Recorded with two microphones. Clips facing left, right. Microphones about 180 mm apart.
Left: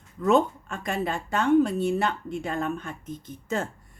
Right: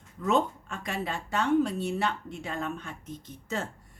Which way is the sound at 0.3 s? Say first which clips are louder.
Left 5 dB; 50° left (ahead or behind).